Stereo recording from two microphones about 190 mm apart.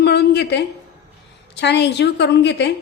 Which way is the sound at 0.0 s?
60° left (ahead or behind).